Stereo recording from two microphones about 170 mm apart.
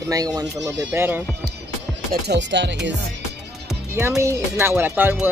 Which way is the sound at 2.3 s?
90° right.